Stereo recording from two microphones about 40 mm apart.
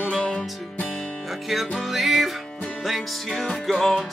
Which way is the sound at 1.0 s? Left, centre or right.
Centre.